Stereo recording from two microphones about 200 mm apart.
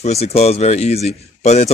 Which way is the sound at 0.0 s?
30° left (ahead or behind).